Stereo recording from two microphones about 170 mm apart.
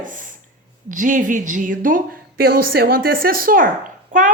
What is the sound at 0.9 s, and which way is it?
A woman's voice, 50° right (ahead or behind).